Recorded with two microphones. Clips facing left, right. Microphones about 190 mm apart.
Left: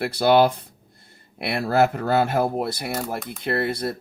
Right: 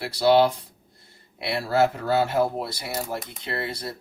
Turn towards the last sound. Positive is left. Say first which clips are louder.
# left 7 dB
turn(degrees=55)  # may be behind; listen again after turning